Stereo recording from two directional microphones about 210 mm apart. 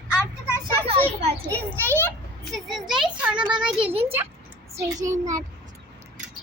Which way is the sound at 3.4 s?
20° right (ahead or behind).